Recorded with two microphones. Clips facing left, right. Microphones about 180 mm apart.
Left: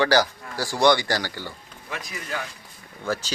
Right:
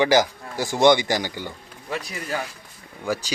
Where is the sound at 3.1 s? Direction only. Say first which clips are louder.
Right 1 dB; 15° right (ahead or behind).